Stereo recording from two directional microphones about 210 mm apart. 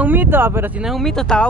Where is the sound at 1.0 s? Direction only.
5° left (ahead or behind).